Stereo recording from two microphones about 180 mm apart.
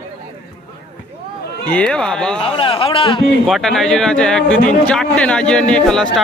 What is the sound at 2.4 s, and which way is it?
Speech, 30° left (ahead or behind).